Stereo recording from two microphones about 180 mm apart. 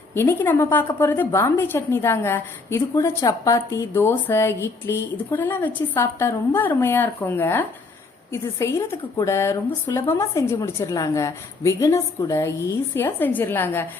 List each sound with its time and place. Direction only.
0.1 s a woman's voice: 15° left (ahead or behind)